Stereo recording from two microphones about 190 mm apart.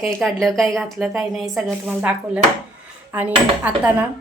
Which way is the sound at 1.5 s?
5° right (ahead or behind).